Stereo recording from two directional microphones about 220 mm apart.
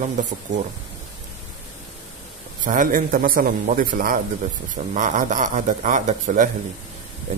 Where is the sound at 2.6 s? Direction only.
35° right (ahead or behind).